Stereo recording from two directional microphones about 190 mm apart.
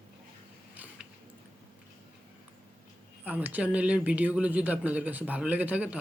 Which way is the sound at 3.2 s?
10° right (ahead or behind).